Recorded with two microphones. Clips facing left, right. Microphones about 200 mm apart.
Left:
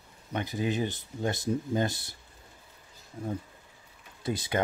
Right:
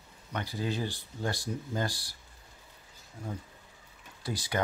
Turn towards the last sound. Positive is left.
turn(degrees=20)  # may be behind; listen again after turning